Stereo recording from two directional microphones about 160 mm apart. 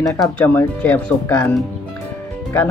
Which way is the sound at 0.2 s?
10° left (ahead or behind).